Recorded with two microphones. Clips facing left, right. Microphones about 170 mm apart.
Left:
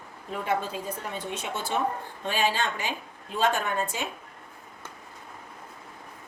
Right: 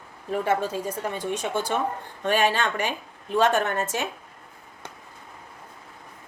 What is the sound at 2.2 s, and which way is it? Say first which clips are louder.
A woman's voice: right 5 dB; 65° right (ahead or behind).